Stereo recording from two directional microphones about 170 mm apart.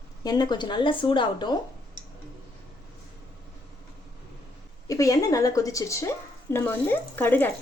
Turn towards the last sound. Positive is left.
turn(degrees=10)  # may be behind; listen again after turning